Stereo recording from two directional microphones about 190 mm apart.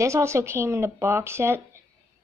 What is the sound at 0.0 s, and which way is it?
Speech, 15° right (ahead or behind).